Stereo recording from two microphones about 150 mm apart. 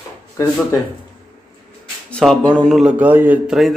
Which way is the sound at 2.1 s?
5° left (ahead or behind).